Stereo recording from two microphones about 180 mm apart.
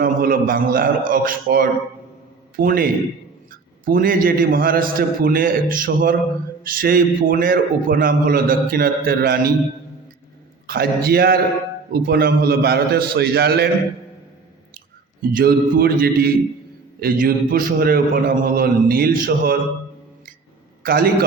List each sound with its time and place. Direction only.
0.0 s a man's voice: 55° right (ahead or behind)
10.7 s a man's voice: 60° right (ahead or behind)
15.2 s a man's voice: 55° right (ahead or behind)
20.8 s a man's voice: 55° right (ahead or behind)